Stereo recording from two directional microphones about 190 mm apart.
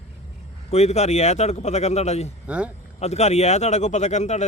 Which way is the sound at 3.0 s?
35° left (ahead or behind).